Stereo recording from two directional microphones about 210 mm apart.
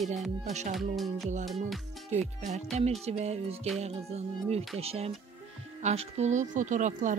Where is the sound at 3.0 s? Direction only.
30° right (ahead or behind).